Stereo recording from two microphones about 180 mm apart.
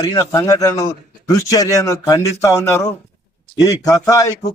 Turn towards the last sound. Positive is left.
turn(degrees=20)  # may be behind; listen again after turning